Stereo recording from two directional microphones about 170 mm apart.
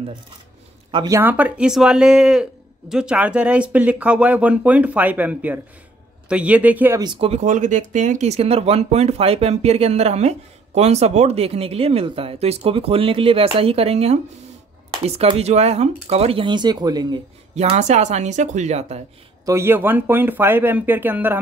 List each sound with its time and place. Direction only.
0.9 s speech: 20° right (ahead or behind)
7.0 s speech: 30° right (ahead or behind)
17.6 s a woman's voice: 40° right (ahead or behind)
19.4 s speech: 15° right (ahead or behind)